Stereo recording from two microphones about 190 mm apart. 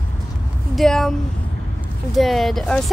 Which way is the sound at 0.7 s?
Centre (ahead or behind).